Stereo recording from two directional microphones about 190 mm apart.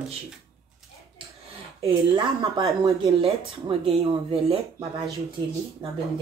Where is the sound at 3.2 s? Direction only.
30° right (ahead or behind).